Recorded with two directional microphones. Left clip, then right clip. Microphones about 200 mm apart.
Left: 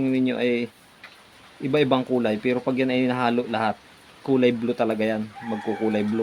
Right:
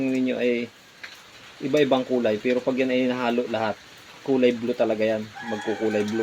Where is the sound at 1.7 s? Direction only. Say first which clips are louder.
Even; 55° left (ahead or behind).